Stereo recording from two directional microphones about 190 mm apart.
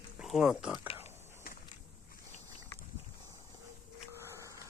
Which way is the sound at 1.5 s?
50° left (ahead or behind).